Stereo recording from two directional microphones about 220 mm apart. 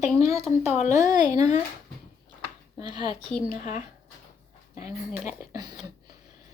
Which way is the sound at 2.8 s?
20° right (ahead or behind).